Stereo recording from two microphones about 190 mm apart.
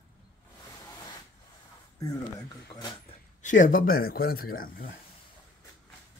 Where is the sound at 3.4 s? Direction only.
45° left (ahead or behind).